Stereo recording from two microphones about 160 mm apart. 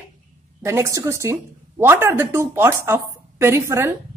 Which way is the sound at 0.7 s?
20° right (ahead or behind).